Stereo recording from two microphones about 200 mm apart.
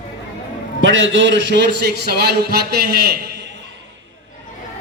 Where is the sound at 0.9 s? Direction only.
70° right (ahead or behind); by 3.4 s 50° right (ahead or behind).